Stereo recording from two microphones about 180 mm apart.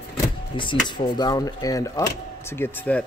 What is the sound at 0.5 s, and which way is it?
Speech, 25° left (ahead or behind).